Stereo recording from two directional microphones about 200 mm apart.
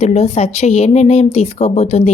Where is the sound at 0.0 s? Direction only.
30° left (ahead or behind).